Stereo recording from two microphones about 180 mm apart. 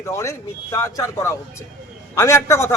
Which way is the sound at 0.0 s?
15° left (ahead or behind).